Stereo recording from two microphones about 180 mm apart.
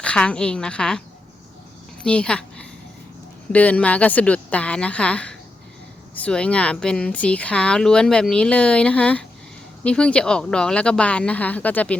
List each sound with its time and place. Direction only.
0.0 s speech: 5° left (ahead or behind)
2.0 s a woman's voice: 5° left (ahead or behind)